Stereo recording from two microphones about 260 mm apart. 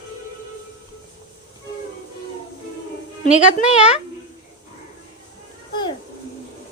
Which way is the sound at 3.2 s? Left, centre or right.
Left.